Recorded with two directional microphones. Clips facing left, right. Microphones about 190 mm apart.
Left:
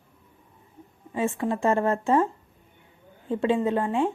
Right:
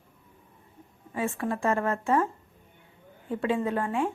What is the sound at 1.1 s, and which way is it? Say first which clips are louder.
A woman's voice: left 3 dB; 20° left (ahead or behind).